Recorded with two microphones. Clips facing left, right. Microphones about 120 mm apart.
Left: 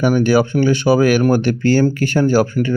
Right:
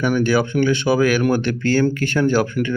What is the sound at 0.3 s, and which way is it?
Speech, 45° left (ahead or behind).